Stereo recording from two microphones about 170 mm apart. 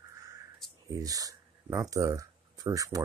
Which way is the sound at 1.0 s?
20° right (ahead or behind).